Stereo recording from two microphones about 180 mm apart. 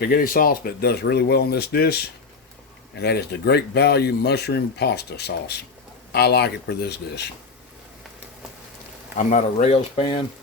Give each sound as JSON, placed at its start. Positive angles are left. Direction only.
{"t": 0.1, "sound": "speech", "side_deg": 55}
{"t": 9.1, "sound": "speech", "side_deg": 40}